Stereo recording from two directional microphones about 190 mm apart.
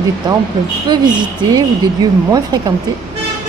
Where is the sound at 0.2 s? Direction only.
25° right (ahead or behind).